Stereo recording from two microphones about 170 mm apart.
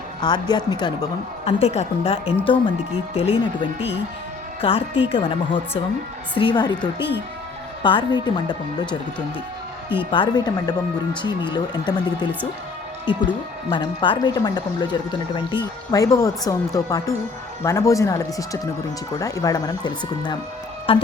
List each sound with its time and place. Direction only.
0.2 s speech: 25° left (ahead or behind)
1.5 s a woman's voice: 40° left (ahead or behind)
10.0 s a woman's voice: 30° left (ahead or behind)